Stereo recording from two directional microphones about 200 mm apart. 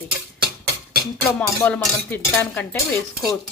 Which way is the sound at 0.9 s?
50° right (ahead or behind).